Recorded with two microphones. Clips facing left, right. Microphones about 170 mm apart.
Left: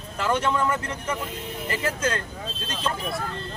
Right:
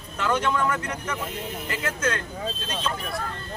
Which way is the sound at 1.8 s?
30° left (ahead or behind).